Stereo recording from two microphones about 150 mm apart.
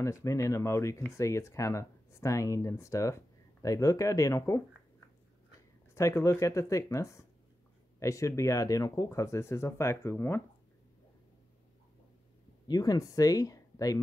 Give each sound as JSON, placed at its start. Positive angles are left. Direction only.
{"t": 0.0, "sound": "speech", "side_deg": 20}
{"t": 5.9, "sound": "speech", "side_deg": 20}
{"t": 12.6, "sound": "speech", "side_deg": 25}